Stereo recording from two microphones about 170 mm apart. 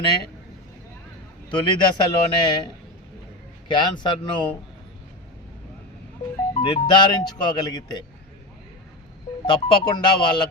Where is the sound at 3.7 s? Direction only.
25° left (ahead or behind).